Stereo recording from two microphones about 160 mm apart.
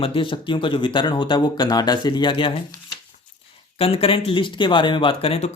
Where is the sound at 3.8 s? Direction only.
35° left (ahead or behind).